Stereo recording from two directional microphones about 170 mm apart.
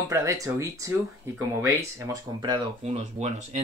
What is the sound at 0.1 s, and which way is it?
Speech, 20° right (ahead or behind).